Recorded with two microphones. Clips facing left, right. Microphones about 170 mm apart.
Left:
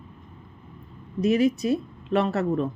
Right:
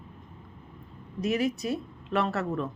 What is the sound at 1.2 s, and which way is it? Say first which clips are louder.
Speech: left 6 dB; 25° left (ahead or behind).